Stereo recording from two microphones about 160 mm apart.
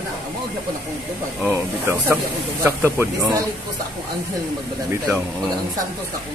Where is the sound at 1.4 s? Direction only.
15° right (ahead or behind).